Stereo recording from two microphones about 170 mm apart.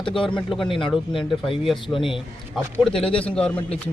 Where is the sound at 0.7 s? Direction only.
30° left (ahead or behind).